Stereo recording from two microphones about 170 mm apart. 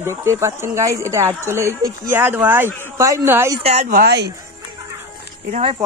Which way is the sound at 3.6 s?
35° right (ahead or behind).